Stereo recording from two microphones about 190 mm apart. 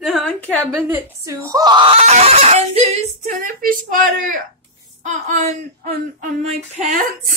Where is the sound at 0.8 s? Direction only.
15° right (ahead or behind); by 7.3 s 45° right (ahead or behind).